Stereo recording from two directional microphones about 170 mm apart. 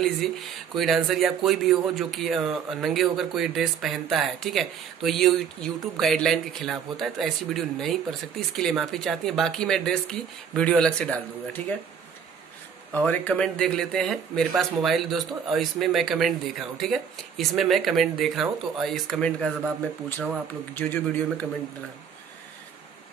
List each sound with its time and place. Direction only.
0.7 s a man's voice: centre (ahead or behind)
12.9 s a man's voice: 10° left (ahead or behind)
20.7 s a man's voice: 10° left (ahead or behind)